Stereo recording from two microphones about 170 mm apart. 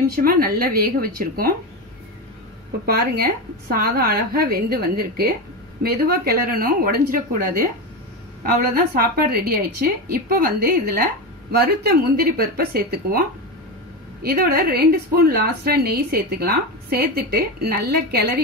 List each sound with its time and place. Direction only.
0.1 s a woman's voice: 60° right (ahead or behind)
2.9 s a woman's voice: 60° right (ahead or behind)
8.9 s a woman's voice: 65° right (ahead or behind)
14.2 s a woman's voice: 60° right (ahead or behind)